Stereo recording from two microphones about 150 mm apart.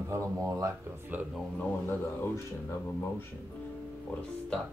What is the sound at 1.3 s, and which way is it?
Speech, 10° left (ahead or behind).